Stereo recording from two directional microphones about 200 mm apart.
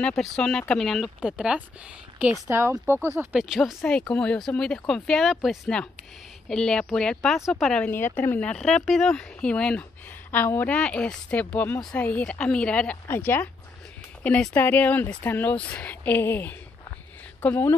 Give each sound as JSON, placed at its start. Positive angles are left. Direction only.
{"t": 0.0, "sound": "speech", "side_deg": 0}
{"t": 2.4, "sound": "speech", "side_deg": -15}